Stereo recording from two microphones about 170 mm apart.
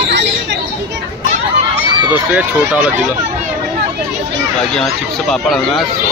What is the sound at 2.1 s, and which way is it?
Speech, 10° right (ahead or behind).